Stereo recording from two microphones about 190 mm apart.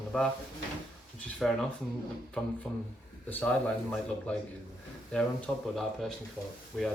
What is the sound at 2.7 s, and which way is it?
Speech, 5° left (ahead or behind).